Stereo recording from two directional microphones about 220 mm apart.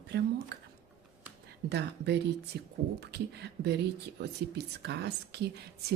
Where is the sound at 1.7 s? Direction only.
50° right (ahead or behind).